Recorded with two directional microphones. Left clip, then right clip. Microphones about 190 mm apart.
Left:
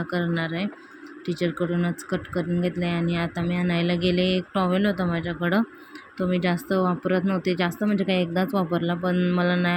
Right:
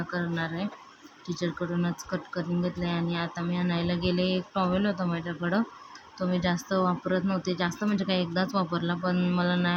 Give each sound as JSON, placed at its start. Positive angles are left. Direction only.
{"t": 0.1, "sound": "speech", "side_deg": 10}